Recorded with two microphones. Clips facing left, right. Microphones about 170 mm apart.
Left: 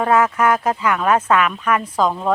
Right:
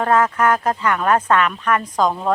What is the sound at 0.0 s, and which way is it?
Speech, 10° left (ahead or behind).